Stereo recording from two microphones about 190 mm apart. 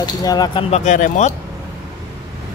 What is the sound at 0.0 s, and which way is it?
Speech, 20° left (ahead or behind).